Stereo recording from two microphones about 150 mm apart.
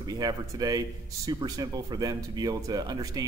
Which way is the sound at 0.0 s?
25° right (ahead or behind).